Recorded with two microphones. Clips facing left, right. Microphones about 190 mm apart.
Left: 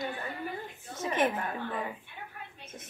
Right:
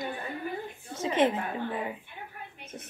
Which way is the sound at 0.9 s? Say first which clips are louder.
Right 3 dB; 10° right (ahead or behind).